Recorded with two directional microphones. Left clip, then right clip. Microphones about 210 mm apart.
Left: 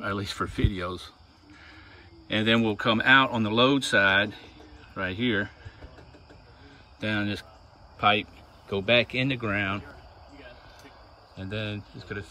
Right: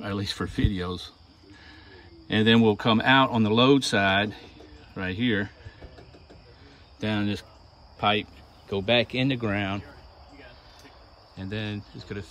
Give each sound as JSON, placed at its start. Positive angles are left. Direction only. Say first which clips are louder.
{"t": 0.0, "sound": "speech", "louder": "left 1 dB", "side_deg": -15}
{"t": 2.2, "sound": "speech", "louder": "right 3 dB", "side_deg": -20}
{"t": 7.0, "sound": "speech", "louder": "even", "side_deg": -15}
{"t": 11.3, "sound": "speech", "louder": "even", "side_deg": -10}